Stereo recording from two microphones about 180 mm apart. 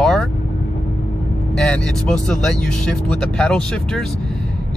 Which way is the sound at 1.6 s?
5° left (ahead or behind).